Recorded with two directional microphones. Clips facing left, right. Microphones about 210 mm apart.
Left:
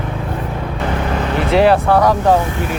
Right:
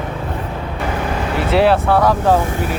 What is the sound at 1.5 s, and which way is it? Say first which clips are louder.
Speech: left 2 dB; centre (ahead or behind).